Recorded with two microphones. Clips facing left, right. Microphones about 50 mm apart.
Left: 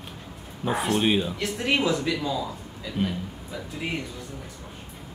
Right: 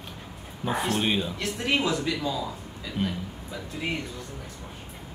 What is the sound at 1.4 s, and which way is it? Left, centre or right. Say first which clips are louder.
Speech: left 2 dB; left.